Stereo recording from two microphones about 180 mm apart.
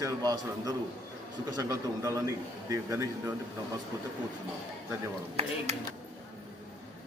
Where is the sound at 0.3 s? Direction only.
20° right (ahead or behind).